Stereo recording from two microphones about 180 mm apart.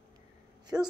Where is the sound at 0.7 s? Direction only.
5° right (ahead or behind).